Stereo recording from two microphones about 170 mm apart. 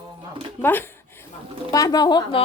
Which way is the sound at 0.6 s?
10° left (ahead or behind).